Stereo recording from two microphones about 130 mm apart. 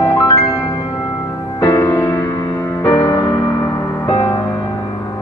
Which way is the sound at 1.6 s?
25° left (ahead or behind).